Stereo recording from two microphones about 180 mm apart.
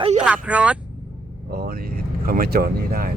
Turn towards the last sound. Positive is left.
turn(degrees=-60)  # may be behind; listen again after turning